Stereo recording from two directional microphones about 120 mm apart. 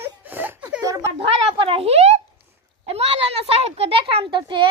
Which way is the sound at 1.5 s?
50° right (ahead or behind).